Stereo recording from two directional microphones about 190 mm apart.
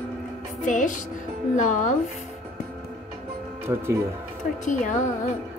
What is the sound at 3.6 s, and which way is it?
Speech, 15° right (ahead or behind).